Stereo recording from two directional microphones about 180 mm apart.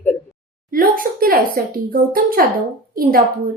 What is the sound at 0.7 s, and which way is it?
Speech, 50° right (ahead or behind).